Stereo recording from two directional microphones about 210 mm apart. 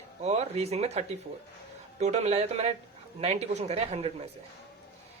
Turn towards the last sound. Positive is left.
turn(degrees=-30)  # may be behind; listen again after turning